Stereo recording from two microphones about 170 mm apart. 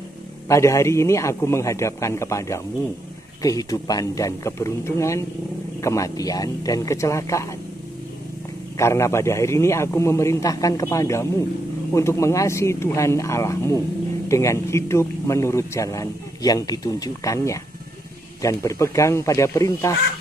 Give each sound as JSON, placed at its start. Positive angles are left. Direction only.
{"t": 0.5, "sound": "a man's voice", "side_deg": 15}
{"t": 8.7, "sound": "a man's voice", "side_deg": 15}